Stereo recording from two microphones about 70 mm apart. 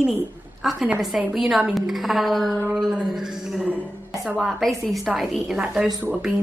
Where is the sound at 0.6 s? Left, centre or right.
Centre.